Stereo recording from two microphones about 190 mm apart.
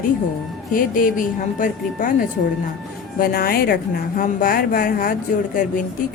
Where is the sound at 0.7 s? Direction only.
45° left (ahead or behind).